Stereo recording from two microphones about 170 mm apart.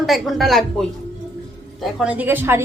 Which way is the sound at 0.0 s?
Centre (ahead or behind).